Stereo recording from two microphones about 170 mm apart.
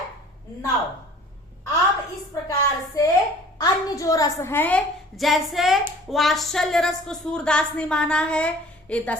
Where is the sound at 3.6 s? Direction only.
20° left (ahead or behind).